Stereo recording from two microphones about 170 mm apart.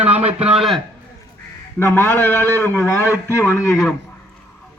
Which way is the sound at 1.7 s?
15° left (ahead or behind).